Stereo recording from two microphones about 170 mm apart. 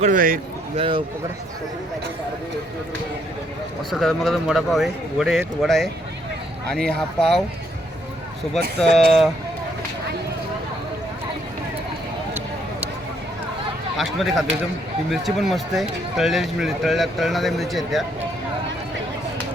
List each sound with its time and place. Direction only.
0.0 s a man's voice: 50° right (ahead or behind)
0.8 s a man's voice: 30° right (ahead or behind)
3.9 s a man's voice: centre (ahead or behind)
8.8 s a man's voice: centre (ahead or behind)
13.9 s a man's voice: centre (ahead or behind)